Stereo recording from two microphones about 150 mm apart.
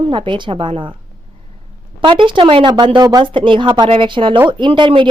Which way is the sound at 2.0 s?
35° right (ahead or behind).